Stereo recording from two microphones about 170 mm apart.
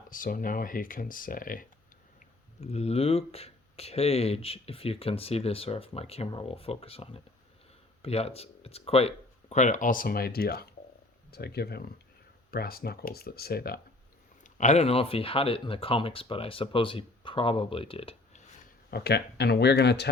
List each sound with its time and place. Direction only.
0.1 s speech: 55° left (ahead or behind)
2.1 s speech: 35° left (ahead or behind); by 13.7 s 65° left (ahead or behind)
14.4 s speech: 45° left (ahead or behind)
18.9 s speech: 70° left (ahead or behind)